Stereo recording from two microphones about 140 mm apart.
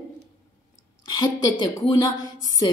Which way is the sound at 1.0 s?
30° left (ahead or behind).